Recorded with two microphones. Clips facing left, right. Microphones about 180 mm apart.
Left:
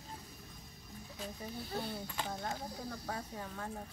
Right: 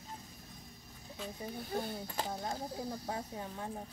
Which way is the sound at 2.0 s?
40° right (ahead or behind).